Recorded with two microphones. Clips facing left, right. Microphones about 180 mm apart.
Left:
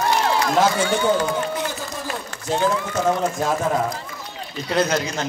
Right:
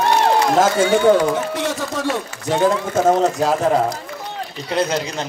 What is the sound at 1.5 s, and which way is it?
A man's voice, 80° right.